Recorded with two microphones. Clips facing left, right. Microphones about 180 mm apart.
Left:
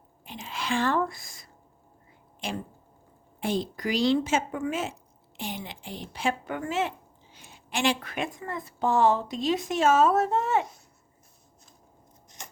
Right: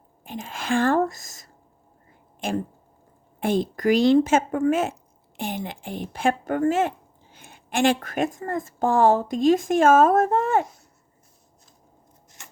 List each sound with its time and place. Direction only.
0.3 s speech: 50° right (ahead or behind)